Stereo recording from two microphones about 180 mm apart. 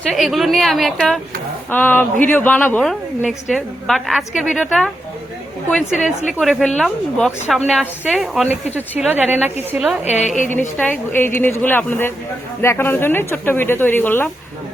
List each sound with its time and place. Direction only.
0.1 s a woman's voice: centre (ahead or behind)
10.2 s a woman's voice: 40° left (ahead or behind)
10.8 s speech: 10° left (ahead or behind)